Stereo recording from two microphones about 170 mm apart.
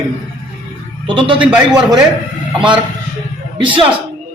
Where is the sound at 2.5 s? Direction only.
30° right (ahead or behind).